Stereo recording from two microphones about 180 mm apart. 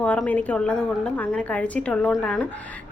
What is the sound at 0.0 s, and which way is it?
A woman's voice, 5° left (ahead or behind).